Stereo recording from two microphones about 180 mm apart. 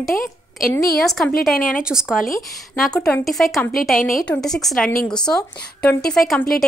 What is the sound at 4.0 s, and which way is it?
Speech, 50° left (ahead or behind).